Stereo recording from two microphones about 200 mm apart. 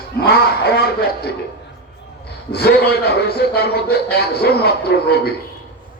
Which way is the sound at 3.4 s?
55° left (ahead or behind).